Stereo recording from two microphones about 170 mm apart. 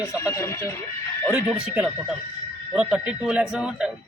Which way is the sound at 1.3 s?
5° right (ahead or behind).